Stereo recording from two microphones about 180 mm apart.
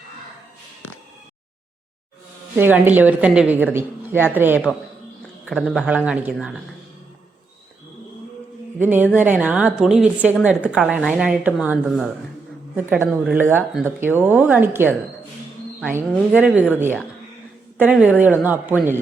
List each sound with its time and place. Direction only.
2.6 s speech: 10° right (ahead or behind)
8.8 s speech: 10° right (ahead or behind)
15.9 s speech: 10° right (ahead or behind)
17.7 s speech: 10° right (ahead or behind)